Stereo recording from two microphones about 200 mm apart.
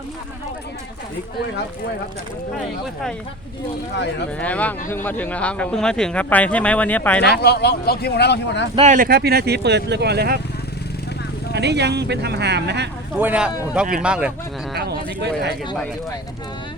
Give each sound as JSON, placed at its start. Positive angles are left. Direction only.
{"t": 4.4, "sound": "speech", "side_deg": 5}
{"t": 7.2, "sound": "speech", "side_deg": 55}
{"t": 8.7, "sound": "speech", "side_deg": -35}
{"t": 11.5, "sound": "speech", "side_deg": -55}
{"t": 13.1, "sound": "speech", "side_deg": -5}
{"t": 14.7, "sound": "speech", "side_deg": -55}